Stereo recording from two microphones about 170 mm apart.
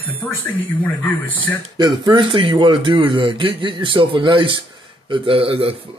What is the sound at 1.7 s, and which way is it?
A man's voice, 25° right (ahead or behind).